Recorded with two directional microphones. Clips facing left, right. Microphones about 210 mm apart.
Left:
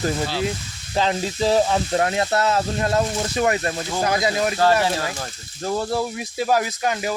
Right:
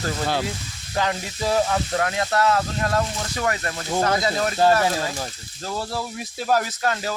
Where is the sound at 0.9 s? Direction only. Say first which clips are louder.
Left 4 dB; 25° left (ahead or behind).